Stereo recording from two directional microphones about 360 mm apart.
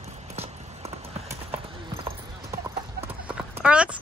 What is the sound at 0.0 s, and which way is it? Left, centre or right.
Clip-clop, centre.